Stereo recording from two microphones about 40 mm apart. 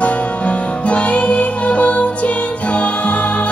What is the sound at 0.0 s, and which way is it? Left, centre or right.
Music, left.